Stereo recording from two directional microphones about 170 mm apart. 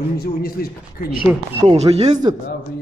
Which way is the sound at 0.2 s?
65° left (ahead or behind).